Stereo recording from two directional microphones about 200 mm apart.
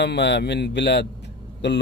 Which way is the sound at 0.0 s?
60° left (ahead or behind).